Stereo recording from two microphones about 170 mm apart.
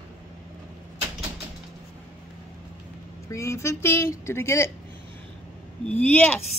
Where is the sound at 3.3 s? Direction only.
15° left (ahead or behind).